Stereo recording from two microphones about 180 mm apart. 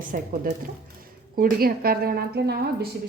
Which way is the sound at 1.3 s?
55° right (ahead or behind).